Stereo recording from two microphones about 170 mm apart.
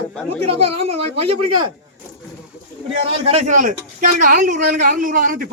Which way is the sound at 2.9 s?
35° right (ahead or behind).